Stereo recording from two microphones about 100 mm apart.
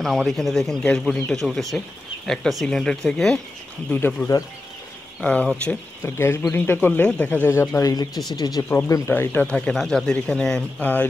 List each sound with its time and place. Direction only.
0.0 s speech: centre (ahead or behind)
3.9 s speech: 20° left (ahead or behind)
6.0 s speech: 25° left (ahead or behind)
7.5 s speech: 30° left (ahead or behind)
7.9 s speech: 40° left (ahead or behind)
8.6 s speech: 25° left (ahead or behind)